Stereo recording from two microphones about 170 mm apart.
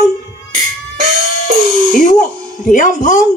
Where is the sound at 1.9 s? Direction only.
50° left (ahead or behind).